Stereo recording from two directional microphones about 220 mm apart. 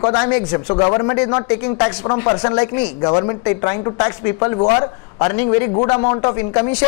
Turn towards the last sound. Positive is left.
turn(degrees=20)  # may be behind; listen again after turning